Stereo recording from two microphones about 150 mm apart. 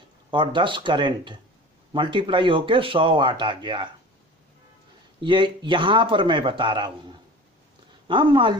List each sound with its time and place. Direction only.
0.3 s speech: 30° right (ahead or behind)
5.2 s speech: 35° right (ahead or behind)